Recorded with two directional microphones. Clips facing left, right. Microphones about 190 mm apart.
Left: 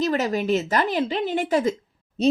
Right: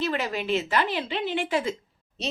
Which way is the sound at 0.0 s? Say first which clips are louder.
Left 5 dB; 40° left (ahead or behind).